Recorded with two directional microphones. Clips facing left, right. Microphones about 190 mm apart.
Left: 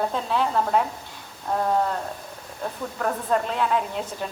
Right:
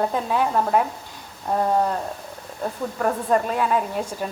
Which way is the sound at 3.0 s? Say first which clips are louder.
Right 3 dB; 5° right (ahead or behind).